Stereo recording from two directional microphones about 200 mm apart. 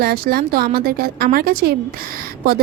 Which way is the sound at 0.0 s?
50° right (ahead or behind).